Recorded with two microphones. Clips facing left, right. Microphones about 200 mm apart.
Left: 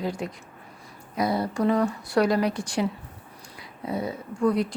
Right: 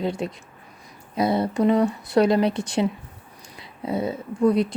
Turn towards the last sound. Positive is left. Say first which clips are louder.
# right 4 dB
turn(degrees=-20)  # may be behind; listen again after turning